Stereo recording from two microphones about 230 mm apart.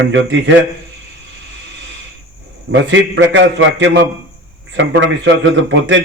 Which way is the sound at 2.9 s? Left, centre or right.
Right.